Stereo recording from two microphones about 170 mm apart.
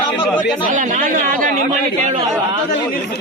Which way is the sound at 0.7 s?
50° right (ahead or behind).